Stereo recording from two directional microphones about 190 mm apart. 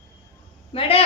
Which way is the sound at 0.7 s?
30° left (ahead or behind).